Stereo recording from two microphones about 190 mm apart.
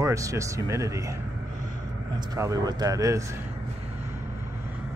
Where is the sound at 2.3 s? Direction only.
15° right (ahead or behind).